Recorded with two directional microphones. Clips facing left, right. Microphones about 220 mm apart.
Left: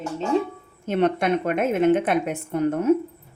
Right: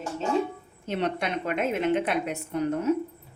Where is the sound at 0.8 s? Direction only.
55° left (ahead or behind).